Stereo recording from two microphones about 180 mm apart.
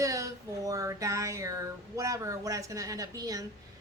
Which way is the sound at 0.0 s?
20° right (ahead or behind).